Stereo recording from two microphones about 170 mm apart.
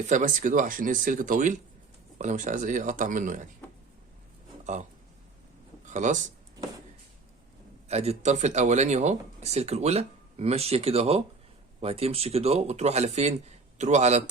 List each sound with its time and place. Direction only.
0.1 s speech: 50° right (ahead or behind)
4.6 s speech: 45° right (ahead or behind)
7.9 s speech: 40° right (ahead or behind)